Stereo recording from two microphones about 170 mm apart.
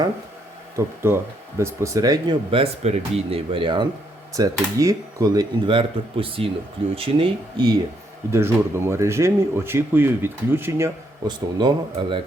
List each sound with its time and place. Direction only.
1.0 s speech: 15° right (ahead or behind)
8.3 s speech: 15° right (ahead or behind); by 12.2 s 30° right (ahead or behind)